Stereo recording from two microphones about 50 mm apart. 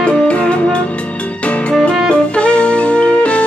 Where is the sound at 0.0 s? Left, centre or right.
Left.